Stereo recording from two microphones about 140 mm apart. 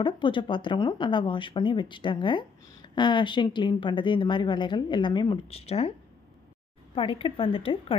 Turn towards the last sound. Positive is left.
turn(degrees=40)  # may be behind; listen again after turning